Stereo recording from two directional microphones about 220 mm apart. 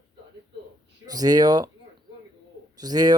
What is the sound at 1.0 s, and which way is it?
Speech, 15° right (ahead or behind).